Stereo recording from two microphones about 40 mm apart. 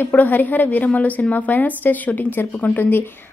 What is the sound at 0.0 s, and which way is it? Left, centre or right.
A woman's voice, left.